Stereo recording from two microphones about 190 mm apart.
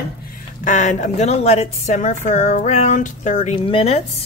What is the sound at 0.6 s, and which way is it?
A woman's voice, 40° left (ahead or behind).